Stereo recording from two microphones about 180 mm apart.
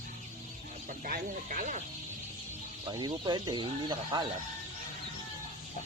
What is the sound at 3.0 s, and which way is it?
Speech, 25° right (ahead or behind).